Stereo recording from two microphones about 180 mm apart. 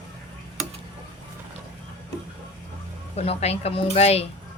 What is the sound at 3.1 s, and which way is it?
Speech, 35° left (ahead or behind).